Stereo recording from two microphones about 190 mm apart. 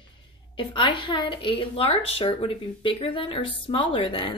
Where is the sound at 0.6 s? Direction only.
25° left (ahead or behind).